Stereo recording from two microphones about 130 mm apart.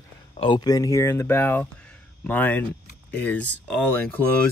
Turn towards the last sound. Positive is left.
turn(degrees=10)  # may be behind; listen again after turning